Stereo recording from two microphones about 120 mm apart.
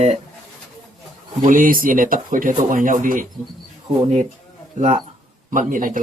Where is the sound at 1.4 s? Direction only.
90° right.